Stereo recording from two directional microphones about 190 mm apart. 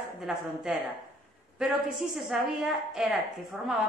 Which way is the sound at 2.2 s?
Centre (ahead or behind).